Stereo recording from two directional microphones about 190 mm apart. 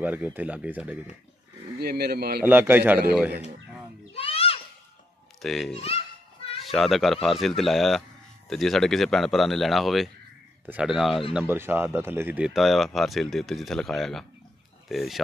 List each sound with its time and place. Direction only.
0.0 s a man's voice: 10° right (ahead or behind)
1.8 s speech: 55° right (ahead or behind)
2.4 s a man's voice: 10° right (ahead or behind)
4.1 s a sound: 30° left (ahead or behind)
5.4 s speech: centre (ahead or behind)
11.3 s speech: 10° right (ahead or behind)